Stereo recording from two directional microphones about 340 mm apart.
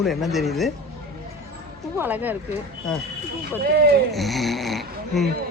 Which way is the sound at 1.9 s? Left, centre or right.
Centre.